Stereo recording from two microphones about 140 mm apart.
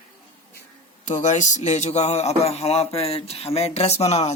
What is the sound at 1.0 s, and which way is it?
Speech, 60° left (ahead or behind).